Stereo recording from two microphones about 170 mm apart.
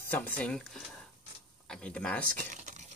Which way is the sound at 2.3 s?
50° right (ahead or behind).